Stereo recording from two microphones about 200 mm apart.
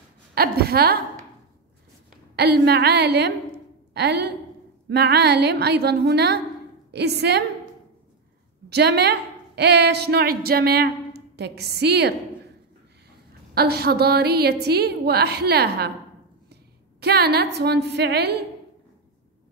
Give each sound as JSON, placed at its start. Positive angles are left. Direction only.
{"t": 0.3, "sound": "a woman's voice", "side_deg": -50}
{"t": 2.3, "sound": "a woman's voice", "side_deg": -55}
{"t": 13.6, "sound": "a woman's voice", "side_deg": -55}
{"t": 17.0, "sound": "speech", "side_deg": -55}